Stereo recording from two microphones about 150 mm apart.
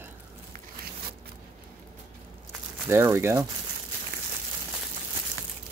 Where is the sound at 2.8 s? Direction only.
15° right (ahead or behind).